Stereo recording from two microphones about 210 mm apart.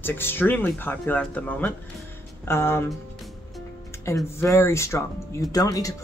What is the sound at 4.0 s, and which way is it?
Speech, 15° left (ahead or behind).